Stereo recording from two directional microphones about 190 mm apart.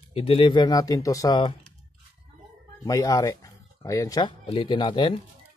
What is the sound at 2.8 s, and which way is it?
Speech, 15° left (ahead or behind).